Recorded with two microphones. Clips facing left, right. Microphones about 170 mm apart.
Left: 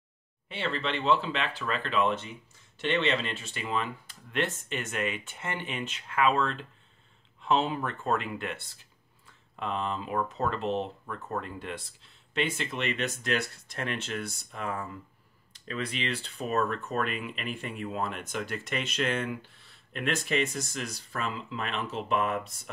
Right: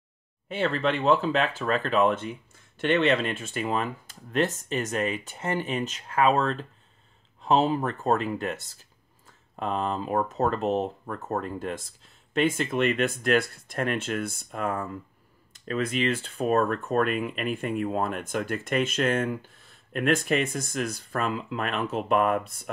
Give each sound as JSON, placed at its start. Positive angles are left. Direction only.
{"t": 0.5, "sound": "speech", "side_deg": -45}